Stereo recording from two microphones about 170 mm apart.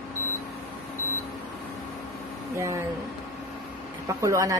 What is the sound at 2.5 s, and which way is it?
Speech, 15° right (ahead or behind).